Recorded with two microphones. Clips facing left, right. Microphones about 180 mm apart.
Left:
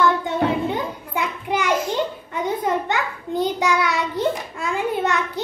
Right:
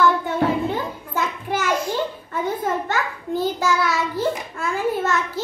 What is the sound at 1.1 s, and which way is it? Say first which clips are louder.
Child singing: left 1 dB; 15° left (ahead or behind).